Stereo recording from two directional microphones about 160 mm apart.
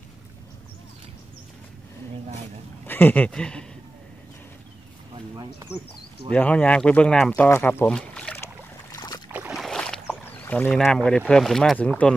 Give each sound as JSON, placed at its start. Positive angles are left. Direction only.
{"t": 2.9, "sound": "speech", "side_deg": 10}
{"t": 5.1, "sound": "a sound", "side_deg": -25}
{"t": 6.3, "sound": "speech", "side_deg": 10}
{"t": 8.9, "sound": "boat", "side_deg": 25}
{"t": 9.5, "sound": "boat", "side_deg": 0}
{"t": 10.2, "sound": "speech", "side_deg": 10}